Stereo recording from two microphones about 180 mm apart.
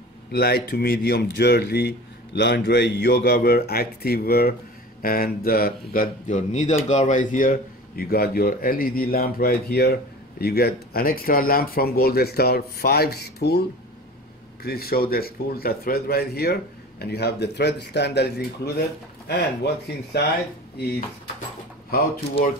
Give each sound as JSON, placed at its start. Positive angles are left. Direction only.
{"t": 0.3, "sound": "a man's voice", "side_deg": 60}